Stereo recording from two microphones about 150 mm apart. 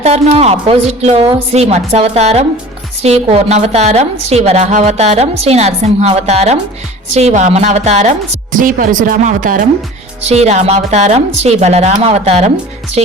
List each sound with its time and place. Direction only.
0.0 s a woman's voice: 45° right (ahead or behind)
8.5 s speech: 65° right (ahead or behind)
10.2 s a woman's voice: 50° right (ahead or behind)